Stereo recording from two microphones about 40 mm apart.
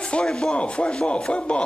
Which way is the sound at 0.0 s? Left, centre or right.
Left.